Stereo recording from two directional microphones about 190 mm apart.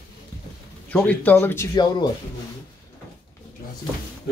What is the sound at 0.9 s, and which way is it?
Speech, 10° left (ahead or behind).